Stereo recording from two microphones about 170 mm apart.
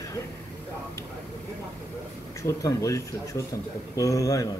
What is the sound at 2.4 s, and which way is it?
Speech, 20° left (ahead or behind).